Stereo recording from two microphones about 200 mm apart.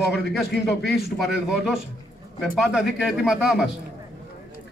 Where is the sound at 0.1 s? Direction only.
Centre (ahead or behind).